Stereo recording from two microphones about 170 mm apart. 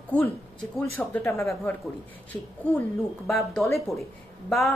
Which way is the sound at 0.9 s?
10° left (ahead or behind).